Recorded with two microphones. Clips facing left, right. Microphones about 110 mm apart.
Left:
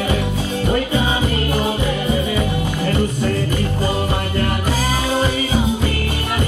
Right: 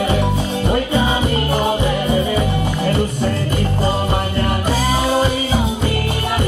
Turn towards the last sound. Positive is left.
turn(degrees=-30)  # may be behind; listen again after turning